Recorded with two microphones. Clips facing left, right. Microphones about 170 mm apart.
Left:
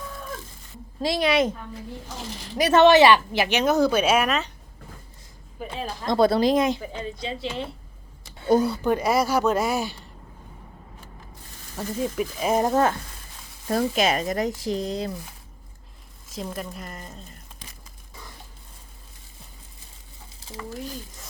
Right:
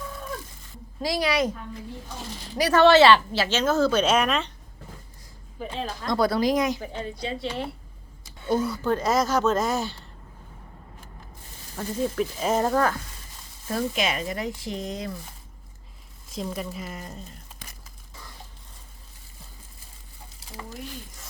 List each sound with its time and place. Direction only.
1.0 s a woman's voice: 25° left (ahead or behind); by 4.5 s 5° left (ahead or behind)
5.5 s speech: 5° left (ahead or behind)
6.0 s a woman's voice: 25° left (ahead or behind)
8.4 s speech: 35° left (ahead or behind)
8.8 s speech: 15° left (ahead or behind)
11.8 s speech: 10° left (ahead or behind)
13.7 s speech: 40° left (ahead or behind)
16.3 s speech: centre (ahead or behind)